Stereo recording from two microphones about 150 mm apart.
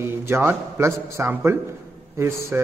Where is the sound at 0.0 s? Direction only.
15° right (ahead or behind).